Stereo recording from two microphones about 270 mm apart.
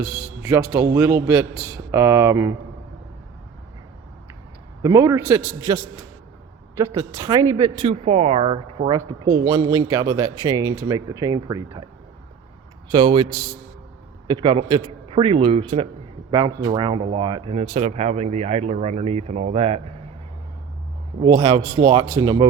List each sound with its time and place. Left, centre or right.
0.0 s speech: centre
4.8 s speech: centre
6.9 s speech: centre
12.9 s speech: centre
14.3 s speech: centre
21.2 s speech: centre